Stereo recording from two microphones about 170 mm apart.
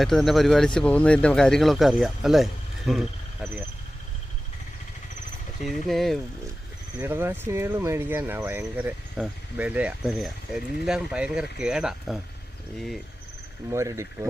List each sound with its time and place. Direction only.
0.0 s speech: centre (ahead or behind)
5.6 s speech: centre (ahead or behind)
7.0 s speech: 15° right (ahead or behind)
13.7 s speech: 15° right (ahead or behind)